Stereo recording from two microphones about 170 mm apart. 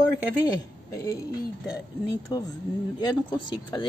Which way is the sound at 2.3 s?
20° left (ahead or behind).